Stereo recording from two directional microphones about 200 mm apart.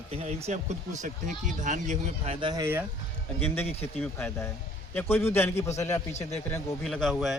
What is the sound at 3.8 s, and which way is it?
Speech, 10° left (ahead or behind).